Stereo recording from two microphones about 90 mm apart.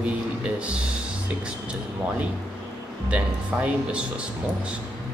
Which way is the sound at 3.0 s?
15° right (ahead or behind).